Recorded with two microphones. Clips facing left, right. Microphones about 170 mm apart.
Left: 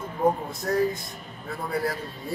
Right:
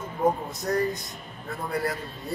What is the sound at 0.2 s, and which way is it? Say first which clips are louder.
A man's voice: left 1 dB; centre (ahead or behind).